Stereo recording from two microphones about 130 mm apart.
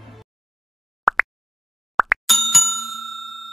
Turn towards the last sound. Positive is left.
turn(degrees=0)  # may be behind; listen again after turning